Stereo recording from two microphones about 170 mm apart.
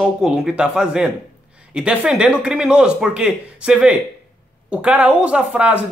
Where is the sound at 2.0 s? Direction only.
5° right (ahead or behind).